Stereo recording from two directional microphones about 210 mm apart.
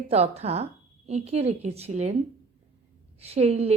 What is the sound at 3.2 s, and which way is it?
Speech, 30° right (ahead or behind).